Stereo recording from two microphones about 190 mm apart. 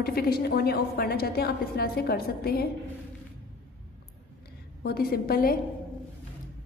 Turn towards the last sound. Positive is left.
turn(degrees=50)  # may be behind; listen again after turning